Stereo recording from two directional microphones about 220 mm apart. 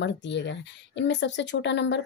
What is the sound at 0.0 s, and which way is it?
A woman's voice, 55° left (ahead or behind).